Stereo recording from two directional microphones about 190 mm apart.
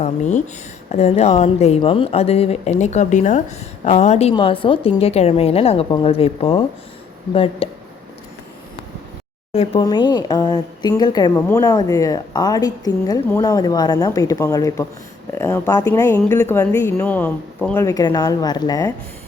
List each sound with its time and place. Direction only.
0.0 s speech: 40° left (ahead or behind)
9.5 s speech: 35° left (ahead or behind)
9.8 s a woman's voice: 25° left (ahead or behind); by 17.8 s 10° left (ahead or behind)
17.8 s a woman's voice: 20° left (ahead or behind)